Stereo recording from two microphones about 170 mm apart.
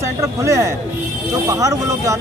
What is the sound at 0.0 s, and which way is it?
Speech, 15° right (ahead or behind).